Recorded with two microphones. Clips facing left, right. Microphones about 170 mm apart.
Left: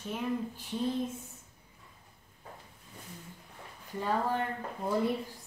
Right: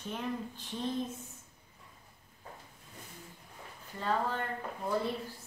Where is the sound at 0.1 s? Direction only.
10° left (ahead or behind).